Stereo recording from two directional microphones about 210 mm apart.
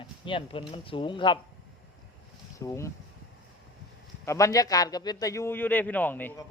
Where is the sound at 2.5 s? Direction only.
15° left (ahead or behind).